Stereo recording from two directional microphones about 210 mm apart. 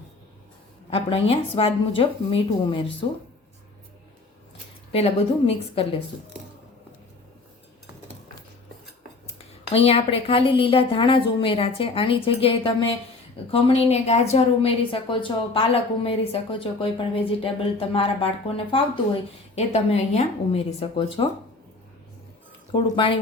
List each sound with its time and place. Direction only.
0.9 s a woman's voice: 25° left (ahead or behind)
4.9 s a woman's voice: 25° left (ahead or behind)
9.7 s a woman's voice: 25° left (ahead or behind)
22.7 s a woman's voice: 25° left (ahead or behind)